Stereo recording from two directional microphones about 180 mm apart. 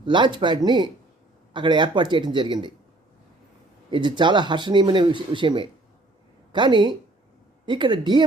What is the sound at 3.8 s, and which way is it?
Speech, 25° right (ahead or behind).